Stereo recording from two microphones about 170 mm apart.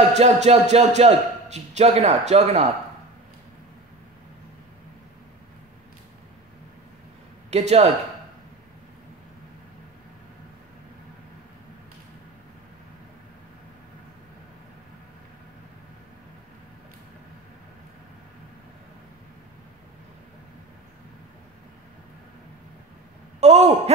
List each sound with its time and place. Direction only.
0.1 s a man's voice: 40° right (ahead or behind)
7.5 s a man's voice: 40° right (ahead or behind)
23.4 s speech: 40° right (ahead or behind)